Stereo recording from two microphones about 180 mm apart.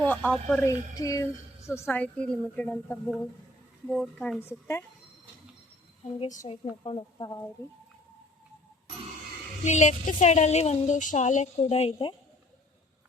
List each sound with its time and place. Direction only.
0.0 s a woman's voice: 10° left (ahead or behind)
6.1 s a woman's voice: 40° left (ahead or behind)
6.5 s speech: 30° left (ahead or behind)
9.6 s a woman's voice: 40° left (ahead or behind)